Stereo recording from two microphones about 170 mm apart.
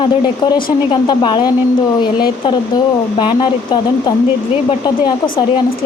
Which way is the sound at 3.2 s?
30° left (ahead or behind).